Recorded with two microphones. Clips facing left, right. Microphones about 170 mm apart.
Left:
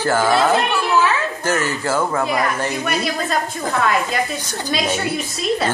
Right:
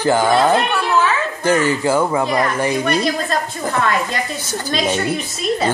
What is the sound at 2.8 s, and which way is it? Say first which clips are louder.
A woman's voice: right 3 dB; 5° left (ahead or behind).